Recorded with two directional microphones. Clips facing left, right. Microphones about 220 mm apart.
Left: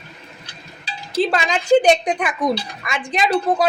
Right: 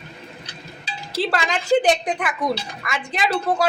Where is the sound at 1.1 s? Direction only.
20° left (ahead or behind).